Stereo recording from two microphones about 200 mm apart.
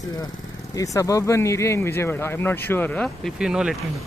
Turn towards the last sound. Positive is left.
turn(degrees=-5)  # may be behind; listen again after turning